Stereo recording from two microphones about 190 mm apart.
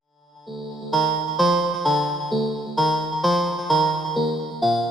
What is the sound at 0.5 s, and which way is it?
Music, centre (ahead or behind).